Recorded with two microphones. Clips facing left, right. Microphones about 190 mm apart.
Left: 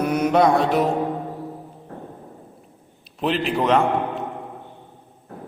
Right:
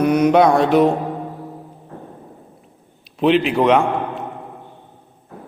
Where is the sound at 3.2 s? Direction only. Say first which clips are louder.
Right 7 dB; centre (ahead or behind).